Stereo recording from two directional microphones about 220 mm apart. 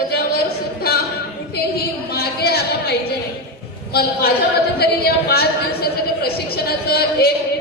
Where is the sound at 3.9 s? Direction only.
45° left (ahead or behind).